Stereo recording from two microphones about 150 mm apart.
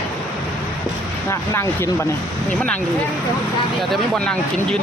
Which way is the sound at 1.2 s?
15° left (ahead or behind).